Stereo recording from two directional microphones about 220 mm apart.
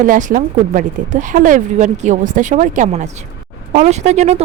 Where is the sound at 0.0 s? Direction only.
35° right (ahead or behind).